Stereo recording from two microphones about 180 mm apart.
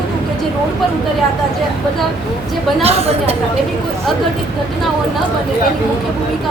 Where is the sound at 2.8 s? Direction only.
35° right (ahead or behind).